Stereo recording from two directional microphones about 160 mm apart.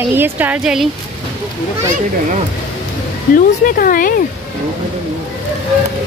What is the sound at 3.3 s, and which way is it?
Speech, 60° left (ahead or behind).